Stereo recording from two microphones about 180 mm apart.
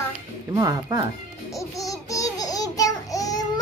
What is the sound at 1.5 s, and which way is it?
Babbling, 20° left (ahead or behind).